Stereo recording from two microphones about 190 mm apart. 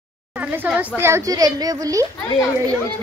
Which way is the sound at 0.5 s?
10° right (ahead or behind).